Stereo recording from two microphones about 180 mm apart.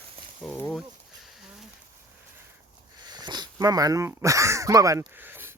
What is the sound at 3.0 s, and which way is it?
Speech, 25° right (ahead or behind).